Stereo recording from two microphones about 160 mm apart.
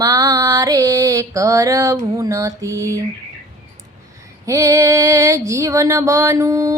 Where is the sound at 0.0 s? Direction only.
20° right (ahead or behind).